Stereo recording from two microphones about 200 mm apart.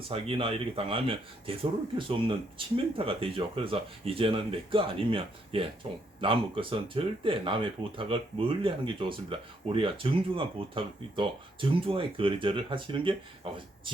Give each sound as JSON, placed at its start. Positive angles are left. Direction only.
{"t": 0.1, "sound": "speech", "side_deg": -30}